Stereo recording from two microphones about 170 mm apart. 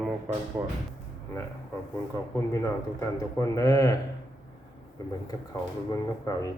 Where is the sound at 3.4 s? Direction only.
20° left (ahead or behind).